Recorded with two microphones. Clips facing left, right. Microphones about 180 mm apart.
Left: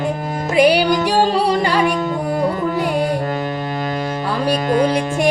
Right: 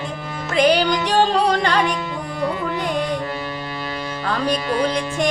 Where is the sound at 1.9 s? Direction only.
50° left (ahead or behind).